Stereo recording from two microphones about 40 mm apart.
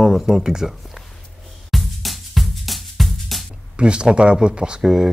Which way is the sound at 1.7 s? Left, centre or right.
Centre.